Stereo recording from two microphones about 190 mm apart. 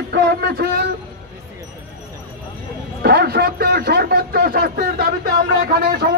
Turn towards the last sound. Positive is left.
turn(degrees=-55)  # may be behind; listen again after turning